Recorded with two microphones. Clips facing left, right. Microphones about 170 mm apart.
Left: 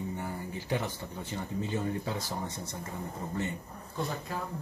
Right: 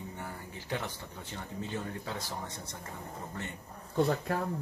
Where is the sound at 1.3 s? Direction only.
10° left (ahead or behind).